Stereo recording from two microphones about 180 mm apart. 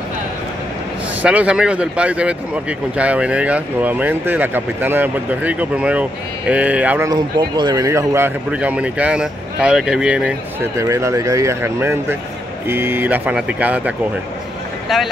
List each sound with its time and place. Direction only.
1.2 s speech: 5° right (ahead or behind)
7.1 s speech: 25° right (ahead or behind); by 10.3 s 5° right (ahead or behind)
10.8 s speech: 15° right (ahead or behind)